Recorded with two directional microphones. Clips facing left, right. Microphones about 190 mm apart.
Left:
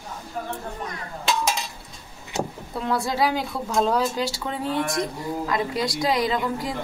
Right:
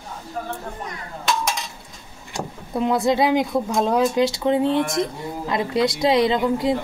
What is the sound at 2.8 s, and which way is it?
Speech, 20° right (ahead or behind).